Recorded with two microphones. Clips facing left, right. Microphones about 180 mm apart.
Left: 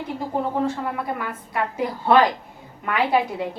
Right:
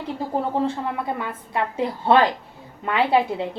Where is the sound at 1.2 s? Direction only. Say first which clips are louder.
Right 1 dB; 25° right (ahead or behind).